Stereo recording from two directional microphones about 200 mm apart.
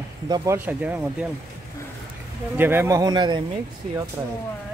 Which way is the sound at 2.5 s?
10° right (ahead or behind).